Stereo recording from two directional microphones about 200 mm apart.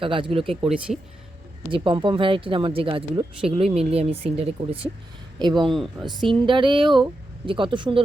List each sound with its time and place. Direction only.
0.0 s speech: 25° right (ahead or behind)
0.5 s speech: 5° right (ahead or behind)
1.7 s speech: 25° right (ahead or behind)
5.7 s speech: centre (ahead or behind)
6.4 s speech: 25° right (ahead or behind)